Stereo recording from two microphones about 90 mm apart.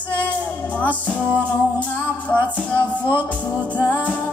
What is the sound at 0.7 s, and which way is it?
Music, 15° left (ahead or behind).